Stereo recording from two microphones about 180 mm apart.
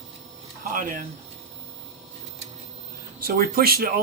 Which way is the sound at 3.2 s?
60° right (ahead or behind).